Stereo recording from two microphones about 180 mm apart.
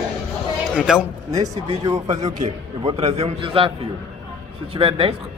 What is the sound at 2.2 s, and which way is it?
A man's voice, 40° right (ahead or behind).